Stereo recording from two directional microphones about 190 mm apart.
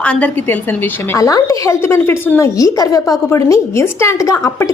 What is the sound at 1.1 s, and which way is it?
Speech, 20° left (ahead or behind).